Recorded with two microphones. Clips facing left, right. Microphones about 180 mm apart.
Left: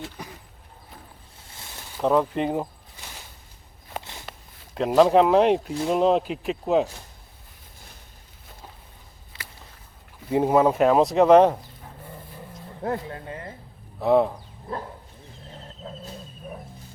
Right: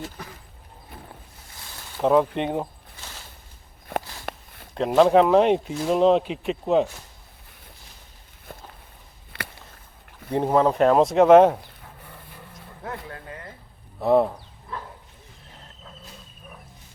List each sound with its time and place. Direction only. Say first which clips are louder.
0.2 s speech: left 1 dB; 15° left (ahead or behind)
2.0 s speech: right 2 dB; centre (ahead or behind)
4.3 s a sound: right 12 dB; 60° right (ahead or behind)
4.7 s speech: even; centre (ahead or behind)
9.3 s a sound: right 8 dB; 60° right (ahead or behind)
10.3 s speech: left 1 dB; 10° left (ahead or behind)
12.8 s speech: left 7 dB; 25° left (ahead or behind)
14.0 s speech: even; centre (ahead or behind)